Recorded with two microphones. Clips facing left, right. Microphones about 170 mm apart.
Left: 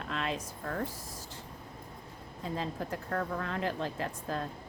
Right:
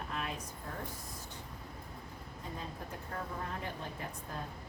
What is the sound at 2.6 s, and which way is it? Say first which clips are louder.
A woman's voice: left 8 dB; 90° left.